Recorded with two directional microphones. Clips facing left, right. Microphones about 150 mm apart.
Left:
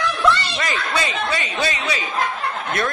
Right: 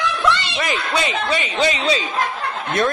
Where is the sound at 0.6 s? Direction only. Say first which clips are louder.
Right 2 dB; 15° right (ahead or behind).